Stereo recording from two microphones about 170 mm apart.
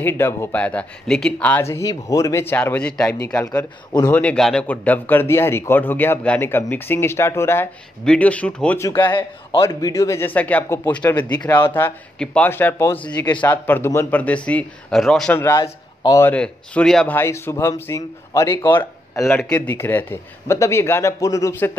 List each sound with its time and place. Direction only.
0.0 s speech: 15° left (ahead or behind)
15.3 s speech: 15° left (ahead or behind)